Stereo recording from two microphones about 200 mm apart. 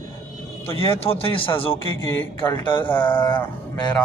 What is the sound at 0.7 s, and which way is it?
Speech, 30° left (ahead or behind).